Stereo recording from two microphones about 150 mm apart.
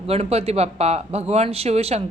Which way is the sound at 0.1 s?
45° right (ahead or behind).